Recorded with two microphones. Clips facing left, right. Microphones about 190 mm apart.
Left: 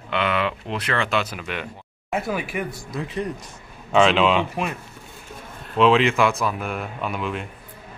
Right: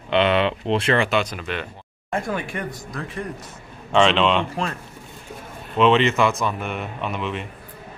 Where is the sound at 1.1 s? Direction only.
5° left (ahead or behind).